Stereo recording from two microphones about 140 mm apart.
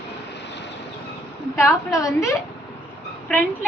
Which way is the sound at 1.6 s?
20° left (ahead or behind).